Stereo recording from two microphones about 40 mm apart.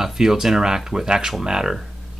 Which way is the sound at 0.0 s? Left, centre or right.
Centre.